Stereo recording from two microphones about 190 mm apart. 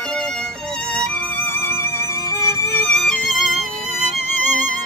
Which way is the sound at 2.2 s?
20° right (ahead or behind).